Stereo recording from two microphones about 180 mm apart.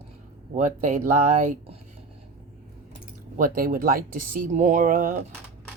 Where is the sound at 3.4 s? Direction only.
50° right (ahead or behind).